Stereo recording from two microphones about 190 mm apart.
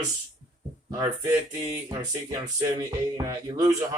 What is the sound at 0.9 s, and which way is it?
Speech, 15° right (ahead or behind).